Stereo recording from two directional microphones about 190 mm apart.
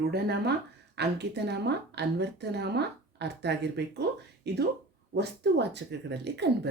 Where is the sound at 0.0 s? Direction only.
60° right (ahead or behind).